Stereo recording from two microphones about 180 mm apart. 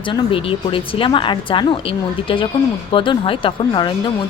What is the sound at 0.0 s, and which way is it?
Speech, 30° left (ahead or behind).